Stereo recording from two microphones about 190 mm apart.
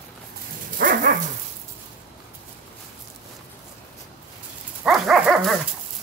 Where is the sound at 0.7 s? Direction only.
50° right (ahead or behind).